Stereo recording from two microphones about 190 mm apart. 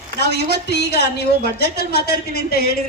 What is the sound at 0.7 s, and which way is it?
A woman's voice, 60° left (ahead or behind).